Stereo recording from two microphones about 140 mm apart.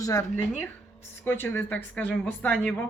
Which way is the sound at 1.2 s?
15° left (ahead or behind).